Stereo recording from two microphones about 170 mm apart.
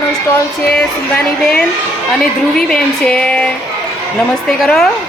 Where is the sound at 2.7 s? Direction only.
5° left (ahead or behind).